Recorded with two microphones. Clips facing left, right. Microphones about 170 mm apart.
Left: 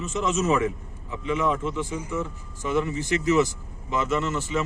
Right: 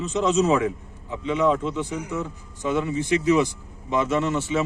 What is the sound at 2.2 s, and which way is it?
A man's voice, 15° right (ahead or behind).